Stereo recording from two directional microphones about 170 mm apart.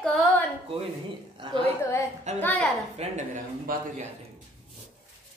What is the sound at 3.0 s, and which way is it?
Speech, 40° right (ahead or behind).